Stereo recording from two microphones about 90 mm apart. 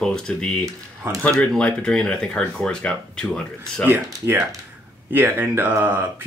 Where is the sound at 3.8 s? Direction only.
25° right (ahead or behind).